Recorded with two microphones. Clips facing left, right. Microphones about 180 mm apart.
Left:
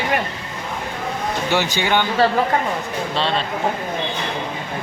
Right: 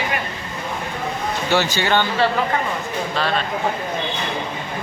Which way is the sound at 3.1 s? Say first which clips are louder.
Left 1 dB; 25° left (ahead or behind).